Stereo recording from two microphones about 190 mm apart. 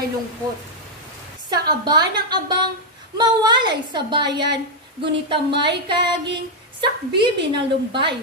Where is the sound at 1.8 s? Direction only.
20° right (ahead or behind).